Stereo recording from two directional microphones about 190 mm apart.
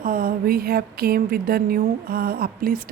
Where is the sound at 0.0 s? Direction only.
50° right (ahead or behind).